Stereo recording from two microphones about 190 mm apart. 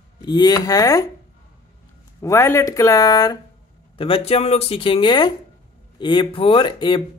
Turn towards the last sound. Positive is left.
turn(degrees=25)  # may be behind; listen again after turning